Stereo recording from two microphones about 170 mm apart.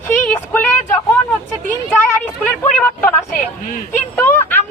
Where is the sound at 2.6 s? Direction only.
10° left (ahead or behind).